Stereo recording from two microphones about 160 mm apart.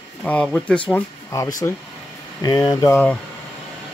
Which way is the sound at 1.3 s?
20° left (ahead or behind).